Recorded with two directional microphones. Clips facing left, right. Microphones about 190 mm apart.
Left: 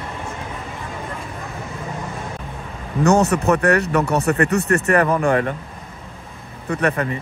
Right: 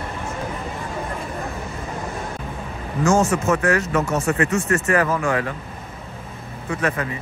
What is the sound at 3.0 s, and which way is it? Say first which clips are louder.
Speech: left 2 dB; 65° left (ahead or behind).